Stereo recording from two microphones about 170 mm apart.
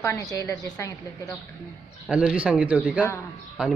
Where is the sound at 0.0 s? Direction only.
20° left (ahead or behind).